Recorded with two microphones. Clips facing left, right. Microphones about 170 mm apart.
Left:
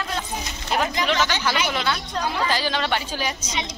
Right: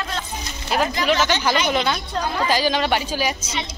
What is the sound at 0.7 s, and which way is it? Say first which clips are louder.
A woman's voice: right 3 dB; 10° right (ahead or behind).